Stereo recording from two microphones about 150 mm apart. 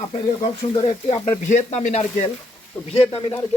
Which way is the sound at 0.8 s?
45° left (ahead or behind).